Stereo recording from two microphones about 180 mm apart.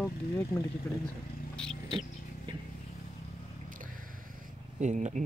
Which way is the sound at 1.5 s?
5° left (ahead or behind).